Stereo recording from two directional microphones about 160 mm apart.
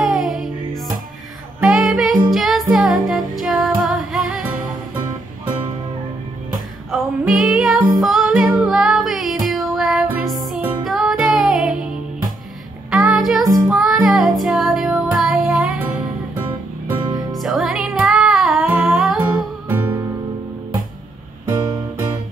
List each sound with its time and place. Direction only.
0.0 s music: 5° right (ahead or behind)
1.6 s music: 5° right (ahead or behind)
6.9 s music: 5° right (ahead or behind)
12.9 s music: 5° right (ahead or behind)
17.0 s music: 25° right (ahead or behind)
17.3 s music: centre (ahead or behind)
19.2 s music: 20° right (ahead or behind)
21.5 s music: 25° right (ahead or behind)